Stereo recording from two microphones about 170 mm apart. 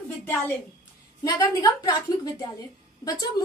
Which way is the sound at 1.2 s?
20° left (ahead or behind).